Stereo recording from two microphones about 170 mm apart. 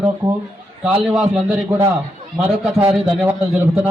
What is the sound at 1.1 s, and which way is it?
Speech, 5° right (ahead or behind).